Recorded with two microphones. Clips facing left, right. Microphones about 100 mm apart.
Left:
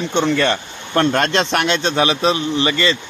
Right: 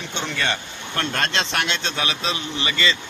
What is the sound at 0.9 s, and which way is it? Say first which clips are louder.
Speech: left 8 dB; 40° left (ahead or behind).